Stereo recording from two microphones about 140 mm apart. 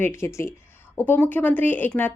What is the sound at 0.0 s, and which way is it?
Speech, 20° left (ahead or behind).